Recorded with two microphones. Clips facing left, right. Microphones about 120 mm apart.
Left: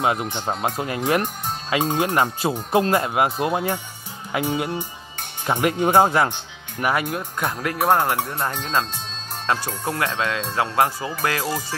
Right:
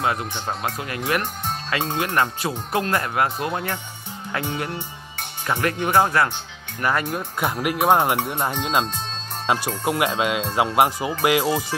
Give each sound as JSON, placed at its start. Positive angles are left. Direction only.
{"t": 0.0, "sound": "speech", "side_deg": 20}
{"t": 6.8, "sound": "speech", "side_deg": 10}
{"t": 7.2, "sound": "speech", "side_deg": -10}